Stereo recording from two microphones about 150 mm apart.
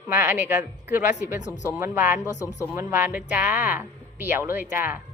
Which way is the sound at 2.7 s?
15° right (ahead or behind).